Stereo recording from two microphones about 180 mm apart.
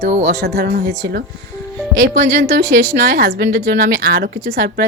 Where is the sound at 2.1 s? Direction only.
45° right (ahead or behind).